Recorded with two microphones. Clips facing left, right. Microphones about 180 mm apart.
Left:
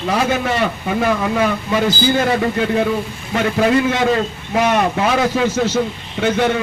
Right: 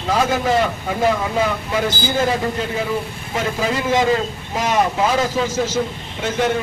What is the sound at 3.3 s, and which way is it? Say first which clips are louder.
A man's voice: left 6 dB; 65° left (ahead or behind).